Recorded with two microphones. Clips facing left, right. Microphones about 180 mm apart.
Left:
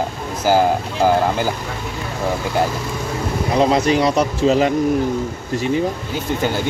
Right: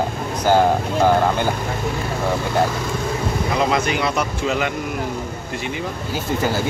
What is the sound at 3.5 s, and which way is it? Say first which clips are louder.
A man's voice: left 6 dB; 35° left (ahead or behind).